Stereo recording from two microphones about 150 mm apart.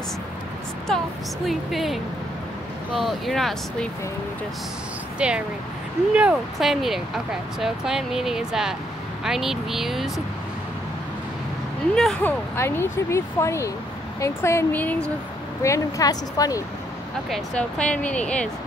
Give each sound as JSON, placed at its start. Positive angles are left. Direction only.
{"t": 0.8, "sound": "speech", "side_deg": 0}
{"t": 5.2, "sound": "speech", "side_deg": -5}
{"t": 11.9, "sound": "speech", "side_deg": 5}
{"t": 15.6, "sound": "a woman's voice", "side_deg": 20}
{"t": 17.3, "sound": "speech", "side_deg": 5}